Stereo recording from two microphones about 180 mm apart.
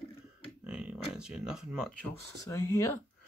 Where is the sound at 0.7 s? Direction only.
5° right (ahead or behind).